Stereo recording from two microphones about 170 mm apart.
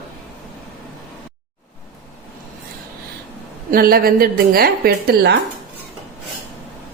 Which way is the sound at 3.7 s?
60° right (ahead or behind).